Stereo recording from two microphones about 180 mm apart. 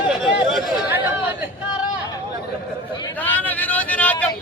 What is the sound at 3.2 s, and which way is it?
Vehicle, 10° left (ahead or behind).